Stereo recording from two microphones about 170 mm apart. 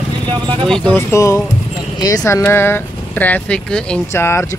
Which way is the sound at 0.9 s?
20° left (ahead or behind).